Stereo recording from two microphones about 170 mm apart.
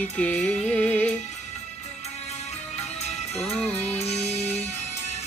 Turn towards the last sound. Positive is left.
turn(degrees=40)  # may be behind; listen again after turning